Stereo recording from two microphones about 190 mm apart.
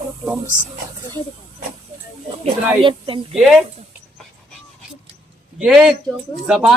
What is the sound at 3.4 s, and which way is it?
Speech, centre (ahead or behind).